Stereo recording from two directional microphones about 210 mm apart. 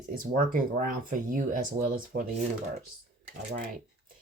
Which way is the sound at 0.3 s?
40° right (ahead or behind).